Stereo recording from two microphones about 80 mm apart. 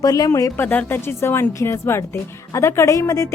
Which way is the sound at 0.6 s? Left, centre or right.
Left.